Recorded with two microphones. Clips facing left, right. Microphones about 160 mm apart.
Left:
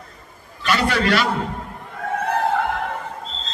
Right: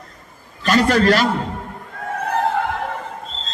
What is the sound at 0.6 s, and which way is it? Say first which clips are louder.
Speech: right 5 dB; 40° right (ahead or behind).